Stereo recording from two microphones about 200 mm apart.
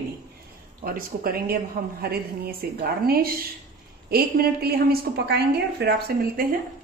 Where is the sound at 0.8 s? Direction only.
45° right (ahead or behind).